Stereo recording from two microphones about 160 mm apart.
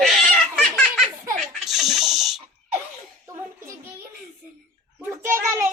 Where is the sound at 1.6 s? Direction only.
Centre (ahead or behind).